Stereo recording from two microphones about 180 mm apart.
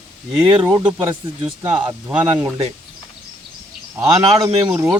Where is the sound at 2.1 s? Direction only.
5° right (ahead or behind).